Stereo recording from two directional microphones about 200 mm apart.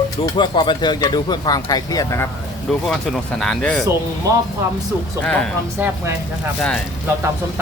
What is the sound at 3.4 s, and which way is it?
Speech, 5° left (ahead or behind).